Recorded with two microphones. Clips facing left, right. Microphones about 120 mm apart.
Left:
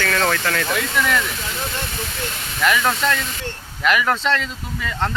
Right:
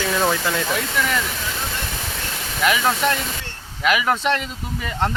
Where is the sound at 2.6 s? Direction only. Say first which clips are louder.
Even; 15° right (ahead or behind).